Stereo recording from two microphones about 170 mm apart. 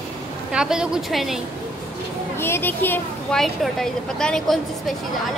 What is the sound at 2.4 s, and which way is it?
A woman's voice, 15° left (ahead or behind).